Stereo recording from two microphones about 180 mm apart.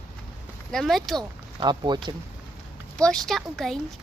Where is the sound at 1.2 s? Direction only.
25° right (ahead or behind).